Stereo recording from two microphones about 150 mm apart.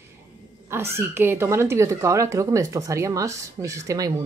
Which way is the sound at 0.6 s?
15° right (ahead or behind).